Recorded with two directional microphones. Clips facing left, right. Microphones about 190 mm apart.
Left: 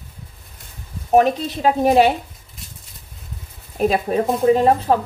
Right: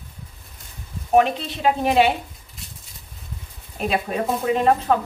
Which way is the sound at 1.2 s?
40° left (ahead or behind).